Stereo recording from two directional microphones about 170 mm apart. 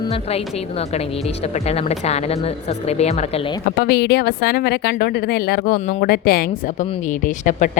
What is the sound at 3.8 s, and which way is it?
A woman's voice, 70° left (ahead or behind).